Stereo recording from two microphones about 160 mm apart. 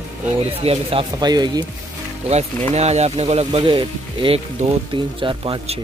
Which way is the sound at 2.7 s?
45° right (ahead or behind).